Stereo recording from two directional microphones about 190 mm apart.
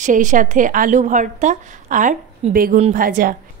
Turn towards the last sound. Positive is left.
turn(degrees=-45)  # may be behind; listen again after turning